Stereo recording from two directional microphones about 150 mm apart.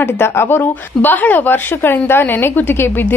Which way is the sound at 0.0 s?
15° left (ahead or behind).